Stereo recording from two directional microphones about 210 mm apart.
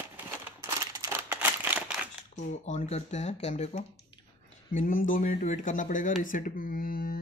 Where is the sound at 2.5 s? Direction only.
35° left (ahead or behind).